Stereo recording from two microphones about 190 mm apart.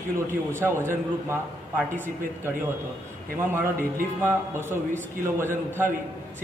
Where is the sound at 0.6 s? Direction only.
10° right (ahead or behind).